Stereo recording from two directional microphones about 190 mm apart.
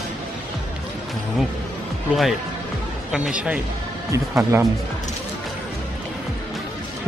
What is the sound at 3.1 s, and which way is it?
Speech, 5° right (ahead or behind).